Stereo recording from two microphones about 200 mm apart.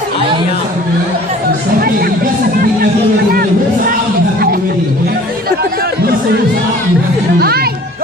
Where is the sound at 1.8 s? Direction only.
50° right (ahead or behind).